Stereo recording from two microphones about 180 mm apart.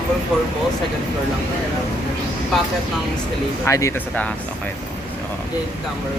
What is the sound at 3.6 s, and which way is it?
Speech, 15° left (ahead or behind).